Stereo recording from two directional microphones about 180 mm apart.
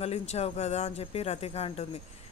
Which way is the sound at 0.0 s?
35° left (ahead or behind).